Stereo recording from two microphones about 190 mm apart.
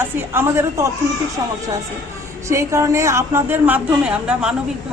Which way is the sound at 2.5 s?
15° right (ahead or behind).